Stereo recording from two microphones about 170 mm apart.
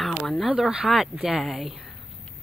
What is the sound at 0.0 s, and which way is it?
Speech, centre (ahead or behind).